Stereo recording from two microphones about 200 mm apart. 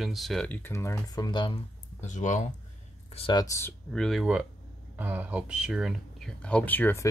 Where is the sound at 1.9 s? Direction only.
35° left (ahead or behind).